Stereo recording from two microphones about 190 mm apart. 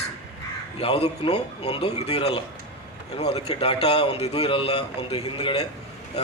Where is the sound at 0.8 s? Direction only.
30° left (ahead or behind).